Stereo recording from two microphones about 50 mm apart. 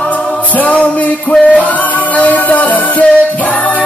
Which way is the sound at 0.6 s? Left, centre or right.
Left.